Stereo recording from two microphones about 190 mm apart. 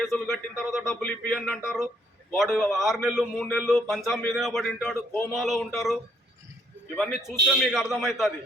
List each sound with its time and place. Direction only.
0.0 s a man's voice: centre (ahead or behind)